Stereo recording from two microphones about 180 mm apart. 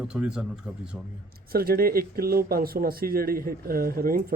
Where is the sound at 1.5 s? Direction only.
55° right (ahead or behind).